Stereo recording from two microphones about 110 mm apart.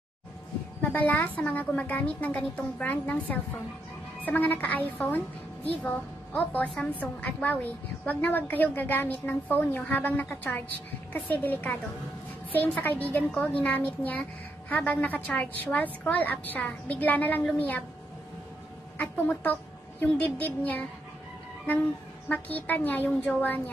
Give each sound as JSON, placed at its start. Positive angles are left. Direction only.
{"t": 0.7, "sound": "a woman's voice", "side_deg": 15}
{"t": 18.9, "sound": "a woman's voice", "side_deg": 15}
{"t": 22.3, "sound": "a woman's voice", "side_deg": 15}